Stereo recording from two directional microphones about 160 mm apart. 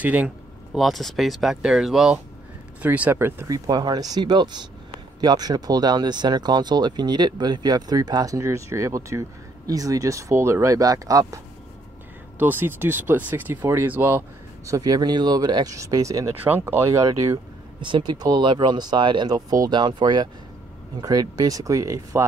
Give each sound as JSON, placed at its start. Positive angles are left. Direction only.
{"t": 0.0, "sound": "speech", "side_deg": -10}
{"t": 14.7, "sound": "speech", "side_deg": -25}
{"t": 17.7, "sound": "speech", "side_deg": -30}